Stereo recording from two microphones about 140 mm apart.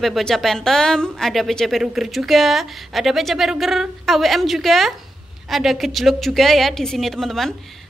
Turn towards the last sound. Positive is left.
turn(degrees=0)  # may be behind; listen again after turning